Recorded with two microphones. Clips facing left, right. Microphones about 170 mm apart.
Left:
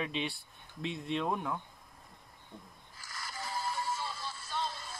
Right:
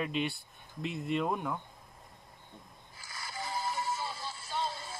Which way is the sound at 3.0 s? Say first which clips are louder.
Right 2 dB; 25° right (ahead or behind).